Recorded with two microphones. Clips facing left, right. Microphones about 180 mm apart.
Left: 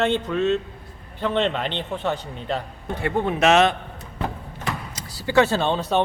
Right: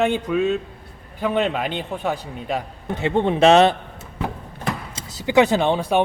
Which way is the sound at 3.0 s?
25° right (ahead or behind).